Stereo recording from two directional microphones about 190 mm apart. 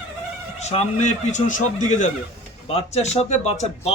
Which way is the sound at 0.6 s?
35° left (ahead or behind).